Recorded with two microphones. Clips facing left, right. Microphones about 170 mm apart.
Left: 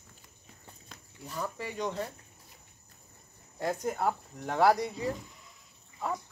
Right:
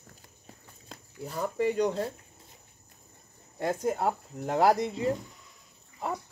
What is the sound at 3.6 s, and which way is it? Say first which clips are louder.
Speech: right 2 dB; 25° right (ahead or behind).